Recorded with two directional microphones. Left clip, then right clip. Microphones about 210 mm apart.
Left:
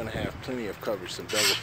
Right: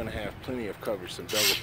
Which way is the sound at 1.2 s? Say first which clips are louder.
Left 1 dB; 45° right (ahead or behind).